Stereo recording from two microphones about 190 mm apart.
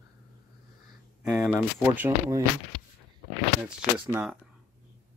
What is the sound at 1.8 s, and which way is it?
Speech, 10° right (ahead or behind).